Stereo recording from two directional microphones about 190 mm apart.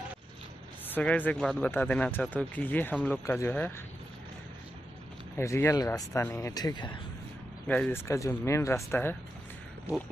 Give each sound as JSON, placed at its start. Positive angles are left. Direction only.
{"t": 0.8, "sound": "speech", "side_deg": 10}
{"t": 5.3, "sound": "speech", "side_deg": 15}
{"t": 7.6, "sound": "speech", "side_deg": 10}